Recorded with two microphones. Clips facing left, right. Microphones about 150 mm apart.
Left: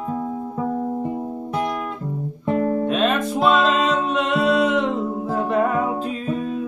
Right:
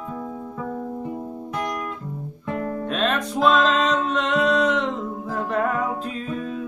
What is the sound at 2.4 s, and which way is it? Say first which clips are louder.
Guitar: left 7 dB; 30° left (ahead or behind).